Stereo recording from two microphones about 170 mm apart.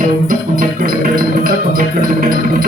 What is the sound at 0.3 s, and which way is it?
Music, 55° right (ahead or behind).